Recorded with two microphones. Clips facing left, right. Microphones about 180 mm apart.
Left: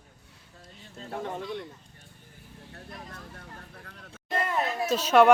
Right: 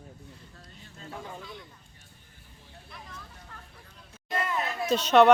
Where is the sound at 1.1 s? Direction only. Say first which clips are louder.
Left 7 dB; 55° left (ahead or behind).